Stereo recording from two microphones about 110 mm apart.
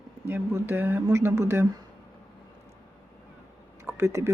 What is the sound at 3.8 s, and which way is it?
Speech, 25° right (ahead or behind).